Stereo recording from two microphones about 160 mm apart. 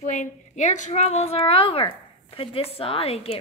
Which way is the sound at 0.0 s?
45° left (ahead or behind).